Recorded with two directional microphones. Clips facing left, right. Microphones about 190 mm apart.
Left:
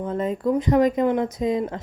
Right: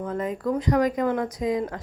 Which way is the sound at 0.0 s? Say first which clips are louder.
Left 3 dB; 25° left (ahead or behind).